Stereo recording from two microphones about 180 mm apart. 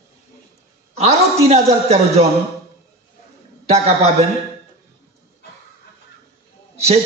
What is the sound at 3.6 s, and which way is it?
Speech, 35° right (ahead or behind).